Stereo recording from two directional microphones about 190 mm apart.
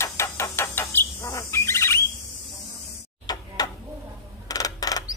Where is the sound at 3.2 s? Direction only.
20° left (ahead or behind).